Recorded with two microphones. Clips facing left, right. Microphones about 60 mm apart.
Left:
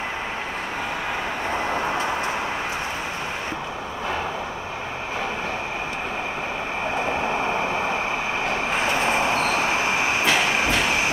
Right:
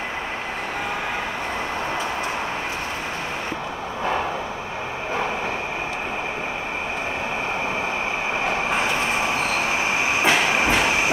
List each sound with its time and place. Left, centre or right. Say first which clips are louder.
10.2 s train: right 4 dB; centre